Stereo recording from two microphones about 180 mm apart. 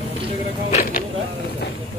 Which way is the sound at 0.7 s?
50° left (ahead or behind).